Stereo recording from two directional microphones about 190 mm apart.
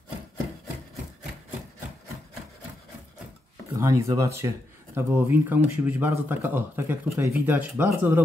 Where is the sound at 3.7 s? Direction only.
15° right (ahead or behind).